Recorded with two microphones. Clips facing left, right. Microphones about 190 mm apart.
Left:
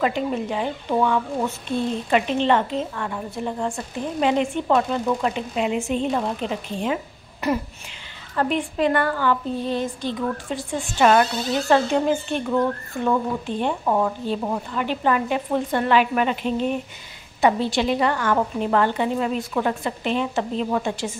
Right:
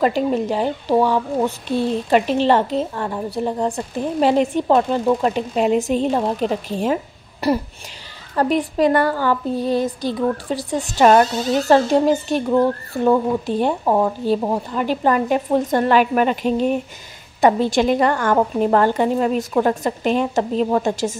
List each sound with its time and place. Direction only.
0.0 s a woman's voice: 40° right (ahead or behind)